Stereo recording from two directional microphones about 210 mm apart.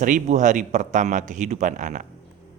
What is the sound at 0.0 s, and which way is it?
Speech, 35° right (ahead or behind).